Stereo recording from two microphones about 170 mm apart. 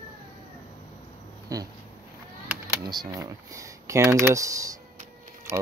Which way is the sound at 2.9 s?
25° right (ahead or behind).